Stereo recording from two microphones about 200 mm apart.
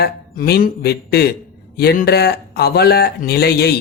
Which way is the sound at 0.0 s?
50° left (ahead or behind).